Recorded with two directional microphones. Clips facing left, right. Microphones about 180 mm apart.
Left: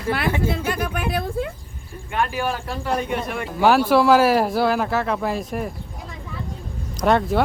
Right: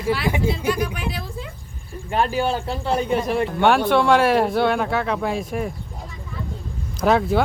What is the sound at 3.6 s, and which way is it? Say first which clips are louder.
Speech: left 3 dB; 5° left (ahead or behind).